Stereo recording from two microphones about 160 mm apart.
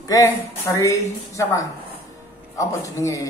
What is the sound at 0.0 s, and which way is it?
Speech, 20° left (ahead or behind).